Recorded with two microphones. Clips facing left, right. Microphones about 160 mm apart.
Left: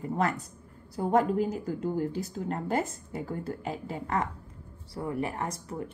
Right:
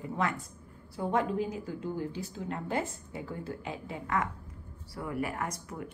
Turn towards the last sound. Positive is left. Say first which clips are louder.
# left 3 dB
turn(degrees=30)  # may be behind; listen again after turning